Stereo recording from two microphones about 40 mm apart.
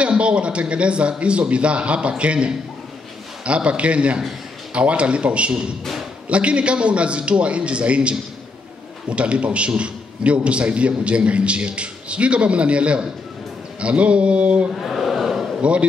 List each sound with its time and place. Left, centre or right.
0.0 s a man's voice: right
14.8 s a sound: centre
15.6 s a man's voice: right